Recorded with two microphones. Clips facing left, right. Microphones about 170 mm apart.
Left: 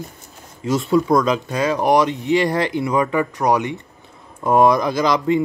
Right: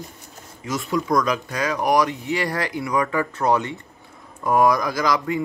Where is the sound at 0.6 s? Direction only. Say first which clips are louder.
Left 7 dB; 30° left (ahead or behind).